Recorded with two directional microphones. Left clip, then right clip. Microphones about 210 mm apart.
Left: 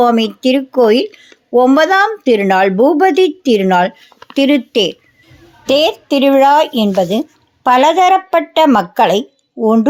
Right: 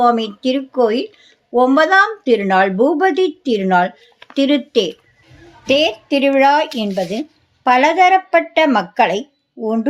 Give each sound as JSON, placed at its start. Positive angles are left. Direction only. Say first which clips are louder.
{"t": 0.0, "sound": "speech", "louder": "left 3 dB", "side_deg": 40}